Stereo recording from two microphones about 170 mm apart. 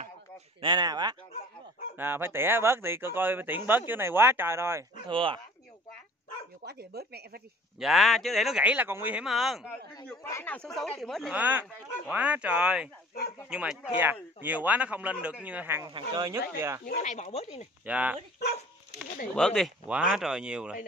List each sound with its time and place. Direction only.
0.6 s speech: 25° right (ahead or behind)
2.0 s speech: 10° right (ahead or behind)
5.0 s speech: 30° right (ahead or behind)
6.6 s speech: 70° right (ahead or behind)
7.8 s speech: centre (ahead or behind)
10.0 s speech: 10° left (ahead or behind)
11.3 s speech: 10° right (ahead or behind)
16.8 s speech: 45° left (ahead or behind)
17.8 s speech: 10° right (ahead or behind)
19.3 s speech: 5° left (ahead or behind)